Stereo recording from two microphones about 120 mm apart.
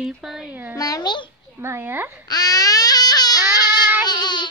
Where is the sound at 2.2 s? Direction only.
30° left (ahead or behind).